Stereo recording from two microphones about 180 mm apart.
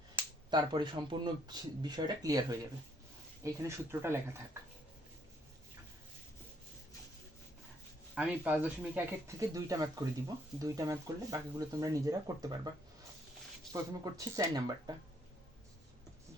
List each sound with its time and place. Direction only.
0.5 s speech: 25° right (ahead or behind)
8.1 s speech: 5° right (ahead or behind)
14.0 s speech: 20° right (ahead or behind)